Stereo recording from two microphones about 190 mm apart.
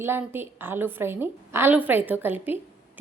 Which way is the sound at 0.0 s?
10° right (ahead or behind).